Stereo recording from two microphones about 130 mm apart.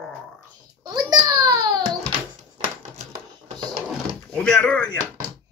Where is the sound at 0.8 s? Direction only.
35° right (ahead or behind).